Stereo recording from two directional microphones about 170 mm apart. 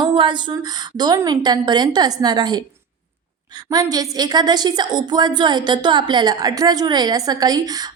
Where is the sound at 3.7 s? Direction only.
25° right (ahead or behind).